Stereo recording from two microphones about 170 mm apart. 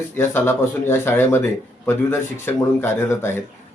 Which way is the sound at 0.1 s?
15° left (ahead or behind).